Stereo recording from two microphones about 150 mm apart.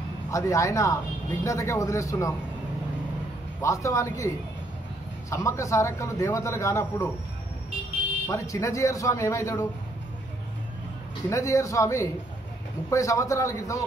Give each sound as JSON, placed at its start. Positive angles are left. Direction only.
{"t": 0.3, "sound": "speech", "side_deg": 20}
{"t": 3.6, "sound": "speech", "side_deg": 20}
{"t": 5.3, "sound": "speech", "side_deg": 20}
{"t": 8.3, "sound": "speech", "side_deg": 20}
{"t": 11.2, "sound": "speech", "side_deg": 20}